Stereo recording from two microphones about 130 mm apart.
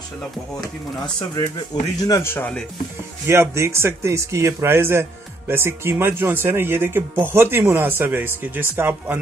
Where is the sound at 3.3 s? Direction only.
20° right (ahead or behind).